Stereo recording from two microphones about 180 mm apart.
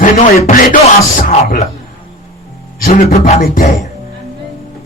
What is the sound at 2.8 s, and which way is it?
Speech, 50° left (ahead or behind).